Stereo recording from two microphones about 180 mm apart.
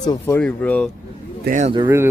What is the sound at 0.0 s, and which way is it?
Speech, 20° left (ahead or behind).